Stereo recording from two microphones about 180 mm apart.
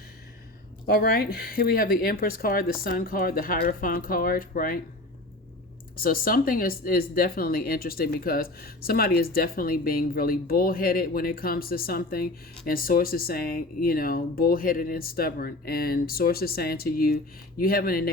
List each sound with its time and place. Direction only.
0.9 s speech: 55° left (ahead or behind)
6.0 s speech: 55° left (ahead or behind)